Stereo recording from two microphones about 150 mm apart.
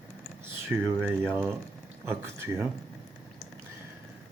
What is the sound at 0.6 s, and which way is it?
Speech, 15° right (ahead or behind).